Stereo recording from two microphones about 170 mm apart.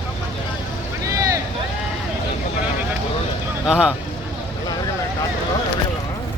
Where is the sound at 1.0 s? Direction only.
20° right (ahead or behind).